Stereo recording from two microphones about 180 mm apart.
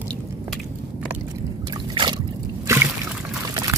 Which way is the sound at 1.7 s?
25° right (ahead or behind).